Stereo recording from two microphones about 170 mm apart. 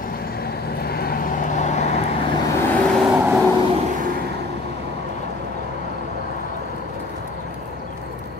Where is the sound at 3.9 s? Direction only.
55° right (ahead or behind).